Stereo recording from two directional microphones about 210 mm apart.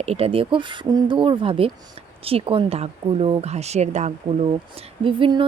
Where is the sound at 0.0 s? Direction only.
30° right (ahead or behind).